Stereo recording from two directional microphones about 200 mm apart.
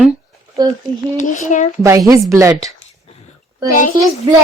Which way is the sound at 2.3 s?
15° right (ahead or behind).